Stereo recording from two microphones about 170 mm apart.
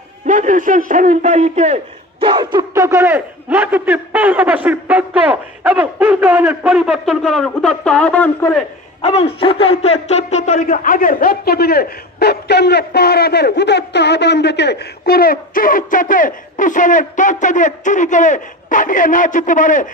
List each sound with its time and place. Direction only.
0.3 s a man's voice: 50° right (ahead or behind); by 8.6 s 5° left (ahead or behind)
9.0 s a man's voice: 35° left (ahead or behind)